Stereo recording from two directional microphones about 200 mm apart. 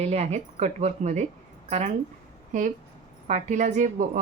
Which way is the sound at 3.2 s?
35° right (ahead or behind).